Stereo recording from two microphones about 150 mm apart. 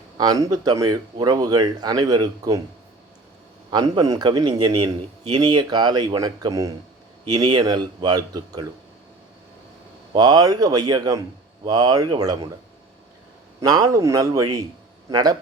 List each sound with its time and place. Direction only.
0.2 s speech: 25° right (ahead or behind)
3.7 s speech: 30° right (ahead or behind)
10.1 s speech: 25° right (ahead or behind)
13.6 s speech: 25° right (ahead or behind)